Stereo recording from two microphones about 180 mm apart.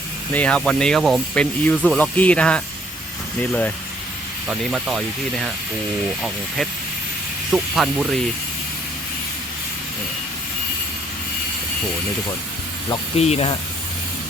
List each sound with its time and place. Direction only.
0.3 s speech: 5° left (ahead or behind)
4.4 s speech: 5° right (ahead or behind)
7.5 s speech: centre (ahead or behind)
13.1 s speech: 35° left (ahead or behind)